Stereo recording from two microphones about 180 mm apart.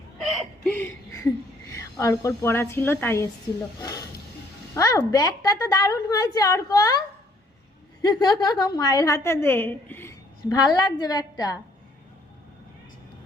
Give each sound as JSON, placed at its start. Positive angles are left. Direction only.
{"t": 0.2, "sound": "chuckle", "side_deg": 0}
{"t": 1.7, "sound": "a woman's voice", "side_deg": 20}
{"t": 3.8, "sound": "snake", "side_deg": 20}
{"t": 4.7, "sound": "a woman's voice", "side_deg": 20}
{"t": 8.0, "sound": "a woman's voice", "side_deg": 20}